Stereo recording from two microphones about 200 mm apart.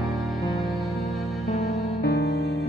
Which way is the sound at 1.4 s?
30° left (ahead or behind).